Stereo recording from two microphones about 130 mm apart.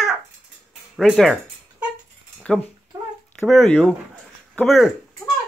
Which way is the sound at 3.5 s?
Centre (ahead or behind).